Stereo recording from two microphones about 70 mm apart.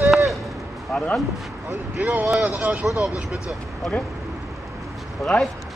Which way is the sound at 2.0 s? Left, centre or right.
Right.